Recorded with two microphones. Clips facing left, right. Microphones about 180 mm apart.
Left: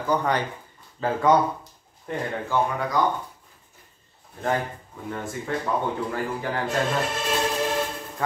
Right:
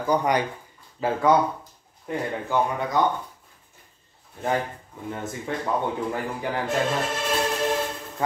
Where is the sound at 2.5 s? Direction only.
15° right (ahead or behind).